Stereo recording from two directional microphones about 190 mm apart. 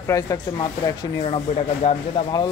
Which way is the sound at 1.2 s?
30° left (ahead or behind).